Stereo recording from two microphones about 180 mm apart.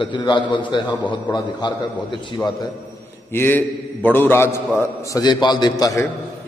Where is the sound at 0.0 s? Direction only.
25° left (ahead or behind).